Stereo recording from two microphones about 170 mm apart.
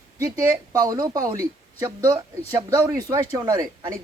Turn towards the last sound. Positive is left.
turn(degrees=-20)  # may be behind; listen again after turning